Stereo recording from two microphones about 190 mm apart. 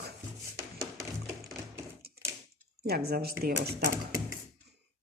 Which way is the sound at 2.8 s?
55° right (ahead or behind).